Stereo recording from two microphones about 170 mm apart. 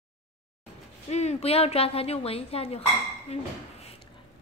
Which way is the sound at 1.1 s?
40° left (ahead or behind).